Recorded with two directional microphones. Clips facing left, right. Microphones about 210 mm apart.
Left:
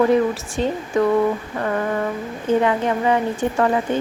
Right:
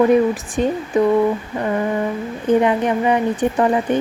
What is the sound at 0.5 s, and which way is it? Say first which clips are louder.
Speech: right 3 dB; 15° right (ahead or behind).